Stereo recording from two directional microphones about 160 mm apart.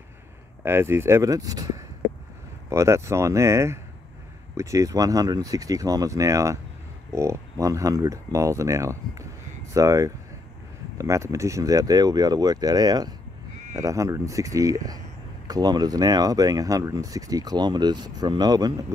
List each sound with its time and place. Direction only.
0.7 s speech: 15° right (ahead or behind)